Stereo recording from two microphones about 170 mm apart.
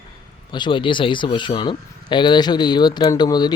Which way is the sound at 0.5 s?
30° left (ahead or behind).